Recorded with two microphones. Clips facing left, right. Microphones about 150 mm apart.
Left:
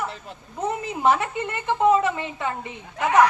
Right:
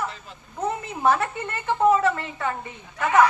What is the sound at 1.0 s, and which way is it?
A woman's voice, 20° left (ahead or behind).